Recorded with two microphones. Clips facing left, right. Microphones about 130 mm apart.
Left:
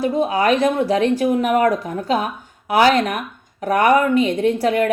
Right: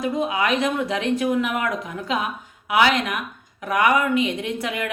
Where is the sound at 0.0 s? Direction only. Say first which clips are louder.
Left 5 dB; 35° left (ahead or behind).